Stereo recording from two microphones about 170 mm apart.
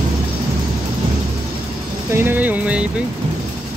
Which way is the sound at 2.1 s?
10° right (ahead or behind).